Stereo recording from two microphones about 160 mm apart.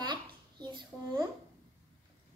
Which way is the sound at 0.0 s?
30° right (ahead or behind).